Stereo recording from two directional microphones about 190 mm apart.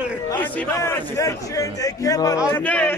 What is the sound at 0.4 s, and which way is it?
A man's voice, 10° left (ahead or behind).